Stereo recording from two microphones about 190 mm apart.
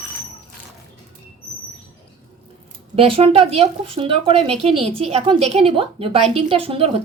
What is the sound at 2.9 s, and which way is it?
Speech, 30° right (ahead or behind).